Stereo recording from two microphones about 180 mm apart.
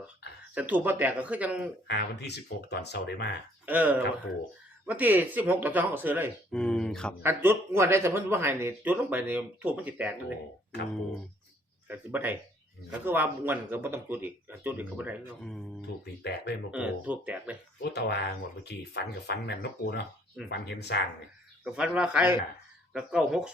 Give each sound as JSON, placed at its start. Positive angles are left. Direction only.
{"t": 0.5, "sound": "speech", "side_deg": -10}
{"t": 1.9, "sound": "speech", "side_deg": 70}
{"t": 3.7, "sound": "speech", "side_deg": -10}
{"t": 6.5, "sound": "speech", "side_deg": 5}
{"t": 7.2, "sound": "speech", "side_deg": -10}
{"t": 11.9, "sound": "speech", "side_deg": -10}
{"t": 16.2, "sound": "speech", "side_deg": 70}
{"t": 16.7, "sound": "speech", "side_deg": -5}
{"t": 17.9, "sound": "speech", "side_deg": 65}
{"t": 21.6, "sound": "speech", "side_deg": -5}